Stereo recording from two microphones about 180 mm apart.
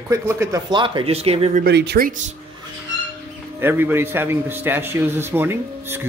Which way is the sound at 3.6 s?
10° right (ahead or behind).